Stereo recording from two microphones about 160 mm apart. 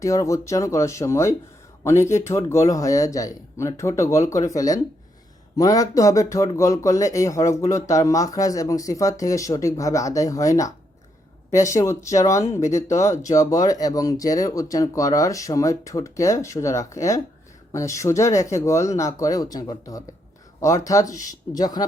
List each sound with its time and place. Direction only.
0.0 s speech: 20° left (ahead or behind)